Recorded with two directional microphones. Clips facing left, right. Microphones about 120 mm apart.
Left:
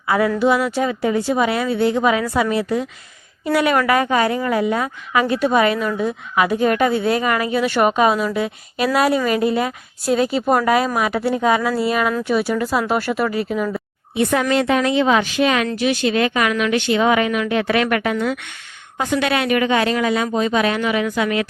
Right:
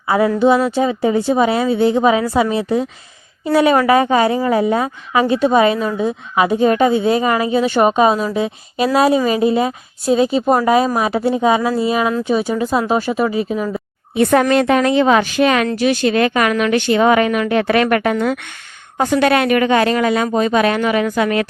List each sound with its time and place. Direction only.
0.1 s a woman's voice: 25° right (ahead or behind)
14.2 s speech: 50° right (ahead or behind)